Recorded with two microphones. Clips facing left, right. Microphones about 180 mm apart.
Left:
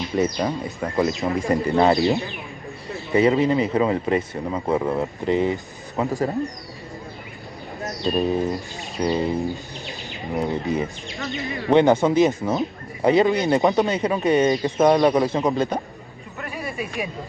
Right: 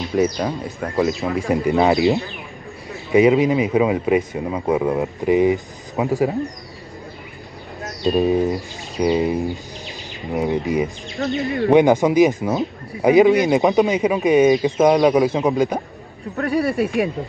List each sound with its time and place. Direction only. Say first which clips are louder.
0.0 s speech: right 3 dB; centre (ahead or behind)
3.2 s speech: right 3 dB; 10° right (ahead or behind)
8.5 s speech: right 3 dB; centre (ahead or behind)
9.1 s speech: right 3 dB; 10° right (ahead or behind)
9.8 s bird: right 2 dB; centre (ahead or behind)
10.5 s speech: right 6 dB; 15° right (ahead or behind)
11.2 s speech: right 7 dB; centre (ahead or behind)
11.7 s speech: right 2 dB; 15° right (ahead or behind)
13.8 s speech: right 3 dB; 10° right (ahead or behind)
16.3 s speech: right 13 dB; 70° right (ahead or behind)
16.7 s speech: right 9 dB; centre (ahead or behind)